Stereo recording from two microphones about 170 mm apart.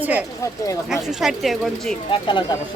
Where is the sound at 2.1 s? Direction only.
30° left (ahead or behind).